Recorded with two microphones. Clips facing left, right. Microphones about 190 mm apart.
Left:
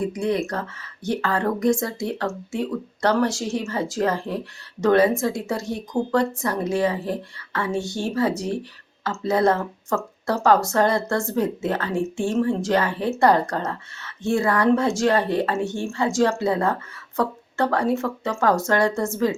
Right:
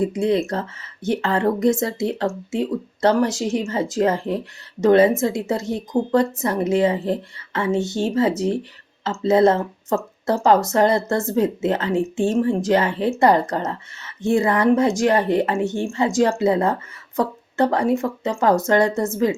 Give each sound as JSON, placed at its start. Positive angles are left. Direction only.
{"t": 0.0, "sound": "speech", "side_deg": -25}